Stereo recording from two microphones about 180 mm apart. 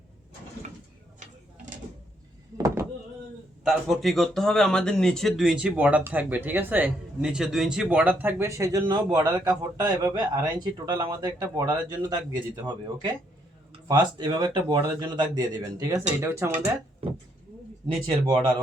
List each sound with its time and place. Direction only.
2.6 s a sound: 20° right (ahead or behind)
3.6 s speech: centre (ahead or behind)
17.8 s speech: 30° right (ahead or behind)